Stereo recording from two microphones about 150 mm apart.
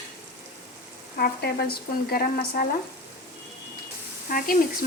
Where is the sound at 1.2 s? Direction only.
90° left.